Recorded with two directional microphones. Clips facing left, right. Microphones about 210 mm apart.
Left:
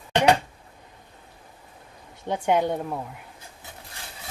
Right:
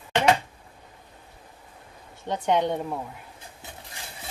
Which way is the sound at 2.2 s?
10° left (ahead or behind).